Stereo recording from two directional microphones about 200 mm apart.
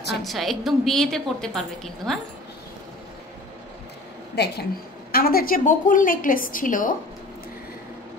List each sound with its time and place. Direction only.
0.2 s a woman's voice: centre (ahead or behind)
4.4 s a woman's voice: 55° left (ahead or behind)